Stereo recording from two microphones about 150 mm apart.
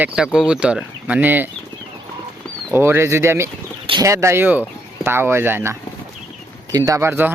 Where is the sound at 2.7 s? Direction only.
15° right (ahead or behind).